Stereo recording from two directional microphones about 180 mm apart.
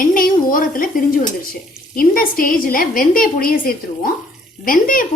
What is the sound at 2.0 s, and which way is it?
A woman's voice, 50° left (ahead or behind).